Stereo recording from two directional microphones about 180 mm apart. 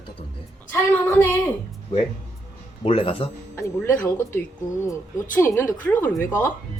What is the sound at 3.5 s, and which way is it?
Speech, 10° left (ahead or behind).